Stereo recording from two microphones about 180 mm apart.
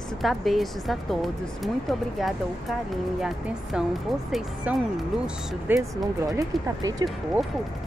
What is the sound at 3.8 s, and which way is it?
A woman's voice, 5° right (ahead or behind).